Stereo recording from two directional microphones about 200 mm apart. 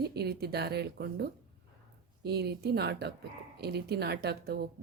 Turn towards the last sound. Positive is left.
turn(degrees=-55)  # may be behind; listen again after turning